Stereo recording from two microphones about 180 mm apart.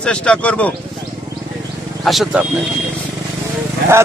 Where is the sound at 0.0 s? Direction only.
5° left (ahead or behind).